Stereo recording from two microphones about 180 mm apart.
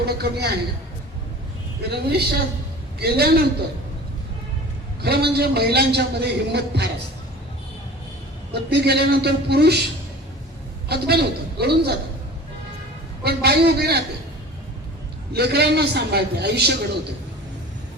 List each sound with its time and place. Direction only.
0.0 s a man's voice: 65° right (ahead or behind)
1.9 s a man's voice: 65° right (ahead or behind)
5.0 s a man's voice: 60° right (ahead or behind)
8.7 s a man's voice: 65° right (ahead or behind)
10.8 s a man's voice: 60° right (ahead or behind)
13.2 s a man's voice: 60° right (ahead or behind)
15.3 s a man's voice: 60° right (ahead or behind)